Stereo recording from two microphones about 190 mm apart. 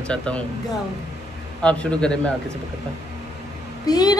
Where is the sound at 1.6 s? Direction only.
5° left (ahead or behind).